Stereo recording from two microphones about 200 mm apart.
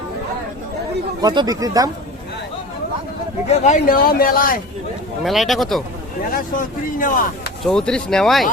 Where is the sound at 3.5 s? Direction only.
35° left (ahead or behind).